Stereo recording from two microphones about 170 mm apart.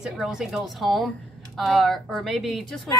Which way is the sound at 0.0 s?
5° right (ahead or behind).